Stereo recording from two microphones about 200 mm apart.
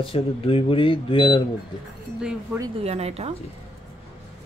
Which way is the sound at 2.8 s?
30° right (ahead or behind).